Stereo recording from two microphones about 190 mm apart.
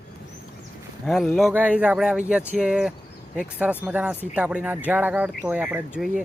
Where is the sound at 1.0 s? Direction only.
Centre (ahead or behind).